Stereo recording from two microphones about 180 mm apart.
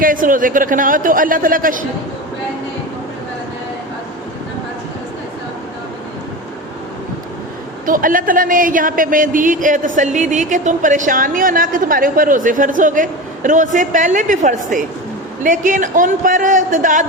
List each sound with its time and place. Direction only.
0.0 s speech: 50° right (ahead or behind)
7.9 s speech: 50° right (ahead or behind)